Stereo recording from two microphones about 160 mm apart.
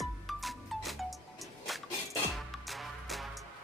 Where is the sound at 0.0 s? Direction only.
Centre (ahead or behind).